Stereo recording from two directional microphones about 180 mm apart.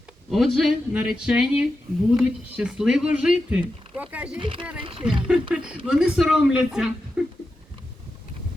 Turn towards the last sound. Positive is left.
turn(degrees=0)  # may be behind; listen again after turning